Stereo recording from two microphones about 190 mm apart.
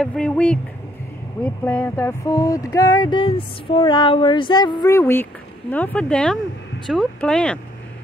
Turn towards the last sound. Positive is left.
turn(degrees=5)  # may be behind; listen again after turning